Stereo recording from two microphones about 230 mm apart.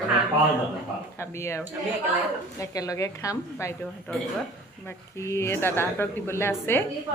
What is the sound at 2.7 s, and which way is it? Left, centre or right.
A woman's voice, centre.